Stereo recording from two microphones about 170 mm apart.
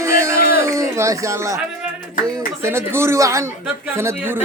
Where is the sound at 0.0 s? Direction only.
15° right (ahead or behind).